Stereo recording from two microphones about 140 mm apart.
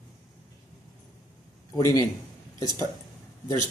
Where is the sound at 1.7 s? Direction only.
25° left (ahead or behind).